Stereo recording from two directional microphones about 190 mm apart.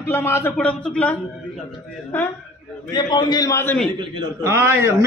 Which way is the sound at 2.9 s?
20° left (ahead or behind).